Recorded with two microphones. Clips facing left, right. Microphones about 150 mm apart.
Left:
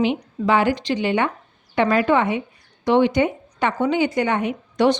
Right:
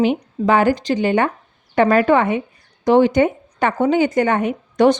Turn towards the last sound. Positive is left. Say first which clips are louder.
# right 4 dB
turn(degrees=-45)  # may be behind; listen again after turning